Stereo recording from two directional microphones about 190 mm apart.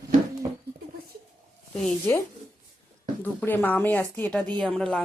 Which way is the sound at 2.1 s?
10° left (ahead or behind).